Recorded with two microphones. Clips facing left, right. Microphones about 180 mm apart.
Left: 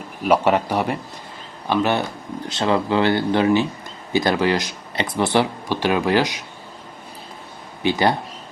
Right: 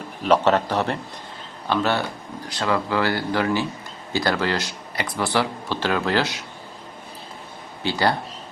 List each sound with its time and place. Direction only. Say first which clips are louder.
0.2 s speech: left 1 dB; 10° left (ahead or behind)
7.8 s speech: left 3 dB; 20° left (ahead or behind)